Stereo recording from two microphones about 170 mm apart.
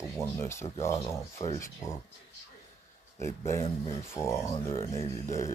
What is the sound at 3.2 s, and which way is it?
Speech, 15° left (ahead or behind).